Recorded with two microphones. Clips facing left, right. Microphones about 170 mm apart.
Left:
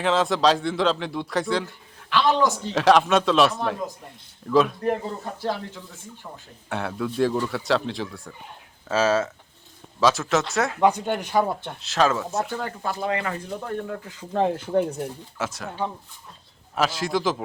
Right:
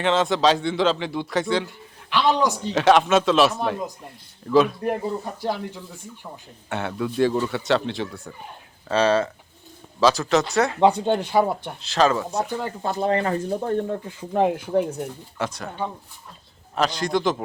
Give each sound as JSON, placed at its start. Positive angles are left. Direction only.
{"t": 0.0, "sound": "a man's voice", "side_deg": 0}
{"t": 1.6, "sound": "speech", "side_deg": -15}
{"t": 2.7, "sound": "a man's voice", "side_deg": 0}
{"t": 6.7, "sound": "a man's voice", "side_deg": 0}
{"t": 10.8, "sound": "speech", "side_deg": -20}
{"t": 11.8, "sound": "a man's voice", "side_deg": 0}
{"t": 12.5, "sound": "speech", "side_deg": -15}
{"t": 12.8, "sound": "speech", "side_deg": -30}
{"t": 14.7, "sound": "a man's voice", "side_deg": 0}